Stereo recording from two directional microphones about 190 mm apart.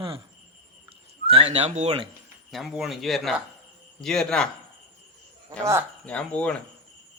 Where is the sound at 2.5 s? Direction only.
Centre (ahead or behind).